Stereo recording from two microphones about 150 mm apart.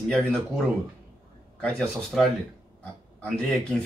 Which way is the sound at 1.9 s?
Centre (ahead or behind).